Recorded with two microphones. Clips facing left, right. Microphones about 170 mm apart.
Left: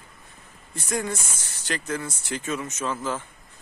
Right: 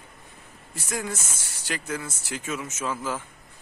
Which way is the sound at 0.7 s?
5° right (ahead or behind).